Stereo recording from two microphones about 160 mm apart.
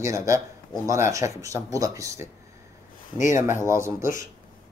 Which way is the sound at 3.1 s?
50° left (ahead or behind).